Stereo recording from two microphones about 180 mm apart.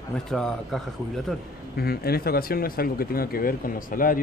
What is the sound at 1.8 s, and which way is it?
Speech, 60° left (ahead or behind).